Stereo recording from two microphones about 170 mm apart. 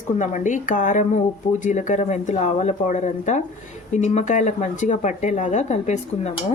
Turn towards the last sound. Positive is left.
turn(degrees=40)  # may be behind; listen again after turning